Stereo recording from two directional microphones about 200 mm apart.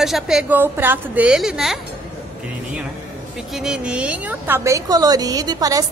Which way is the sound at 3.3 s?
5° right (ahead or behind).